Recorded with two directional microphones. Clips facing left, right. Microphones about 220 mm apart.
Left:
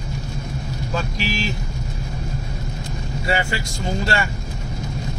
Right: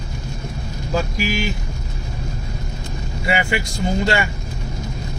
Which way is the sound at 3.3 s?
15° right (ahead or behind).